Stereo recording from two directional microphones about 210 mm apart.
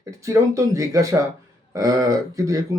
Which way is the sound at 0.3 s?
15° right (ahead or behind).